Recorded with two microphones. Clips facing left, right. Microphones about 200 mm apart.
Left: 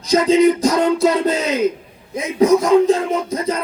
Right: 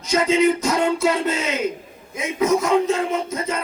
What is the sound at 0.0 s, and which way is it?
Music, 35° left (ahead or behind).